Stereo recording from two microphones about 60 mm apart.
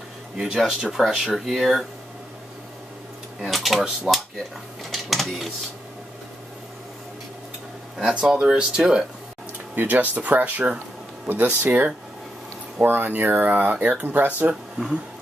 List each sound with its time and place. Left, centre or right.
0.6 s speech: centre
3.3 s speech: centre
4.1 s a sound: centre
4.9 s speech: centre
8.0 s speech: centre
9.8 s speech: right
14.5 s speech: centre